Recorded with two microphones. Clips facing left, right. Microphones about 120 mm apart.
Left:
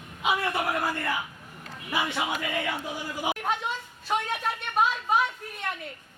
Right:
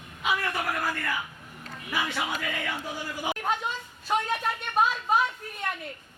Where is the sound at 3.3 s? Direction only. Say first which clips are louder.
Right 3 dB; centre (ahead or behind).